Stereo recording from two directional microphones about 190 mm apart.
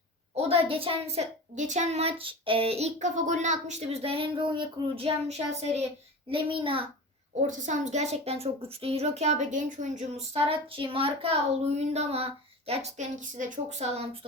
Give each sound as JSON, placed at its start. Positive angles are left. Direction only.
{"t": 0.3, "sound": "a child's voice", "side_deg": -30}
{"t": 7.4, "sound": "speech", "side_deg": -40}